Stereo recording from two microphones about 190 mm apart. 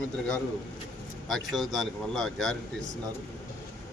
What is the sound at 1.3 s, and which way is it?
A man's voice, centre (ahead or behind).